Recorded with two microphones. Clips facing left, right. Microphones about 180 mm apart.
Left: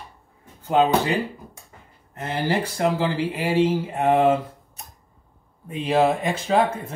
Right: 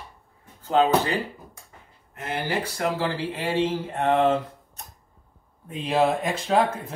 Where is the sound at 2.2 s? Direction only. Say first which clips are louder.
Left 4 dB; 30° left (ahead or behind); by 4.4 s 10° left (ahead or behind).